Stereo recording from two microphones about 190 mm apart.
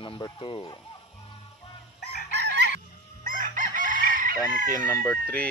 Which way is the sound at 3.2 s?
45° right (ahead or behind).